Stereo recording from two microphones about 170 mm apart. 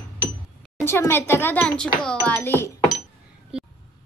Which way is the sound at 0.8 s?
15° left (ahead or behind).